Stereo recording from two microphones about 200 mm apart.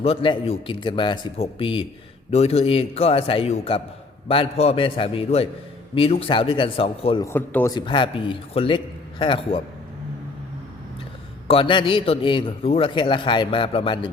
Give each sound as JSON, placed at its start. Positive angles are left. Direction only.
{"t": 0.0, "sound": "a man's voice", "side_deg": 25}
{"t": 7.3, "sound": "a man's voice", "side_deg": 10}
{"t": 11.4, "sound": "a man's voice", "side_deg": 25}